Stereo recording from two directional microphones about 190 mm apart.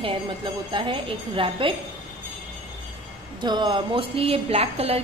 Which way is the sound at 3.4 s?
25° right (ahead or behind).